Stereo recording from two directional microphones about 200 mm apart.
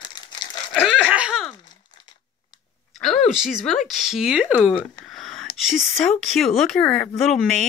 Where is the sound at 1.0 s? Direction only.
5° right (ahead or behind).